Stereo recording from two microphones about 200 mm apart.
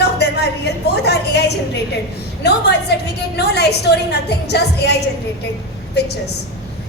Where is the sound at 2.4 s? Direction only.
55° left (ahead or behind).